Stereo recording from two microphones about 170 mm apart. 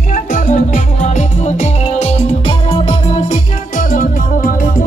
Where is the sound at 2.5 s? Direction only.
30° left (ahead or behind).